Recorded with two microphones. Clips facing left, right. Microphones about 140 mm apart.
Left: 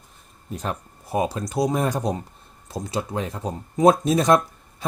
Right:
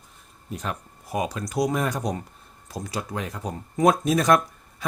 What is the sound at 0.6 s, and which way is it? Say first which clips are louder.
Speech: left 4 dB; 30° left (ahead or behind).